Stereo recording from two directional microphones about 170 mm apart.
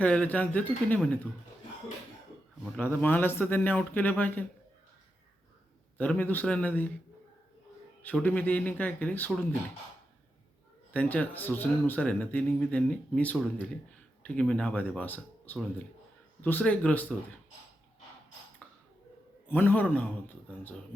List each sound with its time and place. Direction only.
0.0 s speech: 10° left (ahead or behind)
2.7 s speech: 10° left (ahead or behind)
6.0 s speech: 10° left (ahead or behind)
8.0 s speech: 10° left (ahead or behind)
10.9 s speech: 10° left (ahead or behind)
18.6 s a sound: 5° left (ahead or behind)
19.5 s speech: 10° left (ahead or behind)